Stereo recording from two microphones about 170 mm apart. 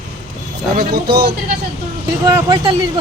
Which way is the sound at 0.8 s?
65° right (ahead or behind).